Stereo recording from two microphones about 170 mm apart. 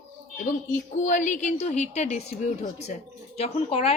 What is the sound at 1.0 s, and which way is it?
A woman's voice, 45° left (ahead or behind).